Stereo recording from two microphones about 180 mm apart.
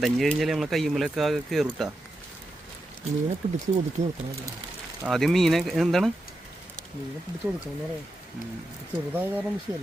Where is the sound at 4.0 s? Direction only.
40° right (ahead or behind).